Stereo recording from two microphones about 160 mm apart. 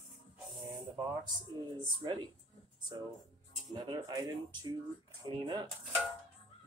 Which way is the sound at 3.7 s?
25° right (ahead or behind).